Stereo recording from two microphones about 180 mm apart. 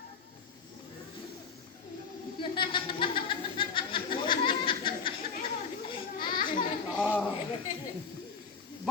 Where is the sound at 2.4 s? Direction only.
25° left (ahead or behind).